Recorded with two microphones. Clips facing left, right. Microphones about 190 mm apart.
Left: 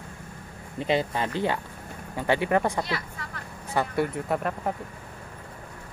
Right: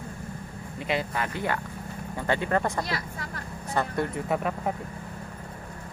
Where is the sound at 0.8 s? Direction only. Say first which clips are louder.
Left 4 dB; 30° left (ahead or behind).